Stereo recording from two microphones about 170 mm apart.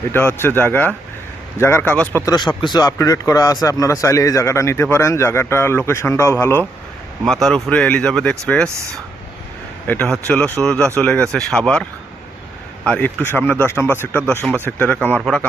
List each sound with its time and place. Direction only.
0.1 s speech: 15° left (ahead or behind)
2.3 s speech: 25° left (ahead or behind); by 8.7 s 5° left (ahead or behind)
9.8 s speech: 10° left (ahead or behind)